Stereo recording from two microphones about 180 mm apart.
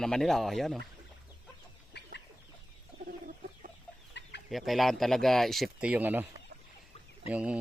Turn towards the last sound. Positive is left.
turn(degrees=-5)  # may be behind; listen again after turning